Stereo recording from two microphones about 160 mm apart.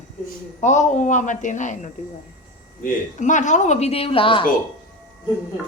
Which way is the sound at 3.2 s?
50° left (ahead or behind).